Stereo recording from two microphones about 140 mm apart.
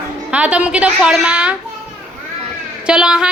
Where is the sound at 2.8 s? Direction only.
5° right (ahead or behind).